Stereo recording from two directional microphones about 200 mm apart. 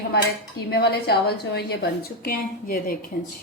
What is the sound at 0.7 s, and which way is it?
Dishes, 55° left (ahead or behind).